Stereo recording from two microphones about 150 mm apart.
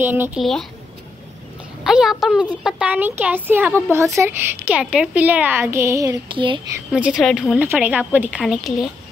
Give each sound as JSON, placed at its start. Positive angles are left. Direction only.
{"t": 0.0, "sound": "speech", "side_deg": -15}
{"t": 0.4, "sound": "a woman's voice", "side_deg": 0}
{"t": 1.9, "sound": "a woman's voice", "side_deg": 0}
{"t": 6.2, "sound": "speech", "side_deg": -35}
{"t": 6.9, "sound": "a woman's voice", "side_deg": -5}
{"t": 7.6, "sound": "speech", "side_deg": -15}